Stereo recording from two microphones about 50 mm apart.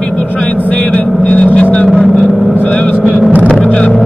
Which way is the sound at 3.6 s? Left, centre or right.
Centre.